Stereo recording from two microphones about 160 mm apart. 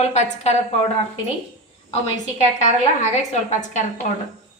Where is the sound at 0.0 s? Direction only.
45° left (ahead or behind).